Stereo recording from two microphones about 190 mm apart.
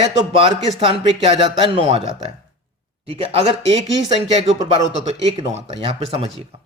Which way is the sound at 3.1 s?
30° right (ahead or behind).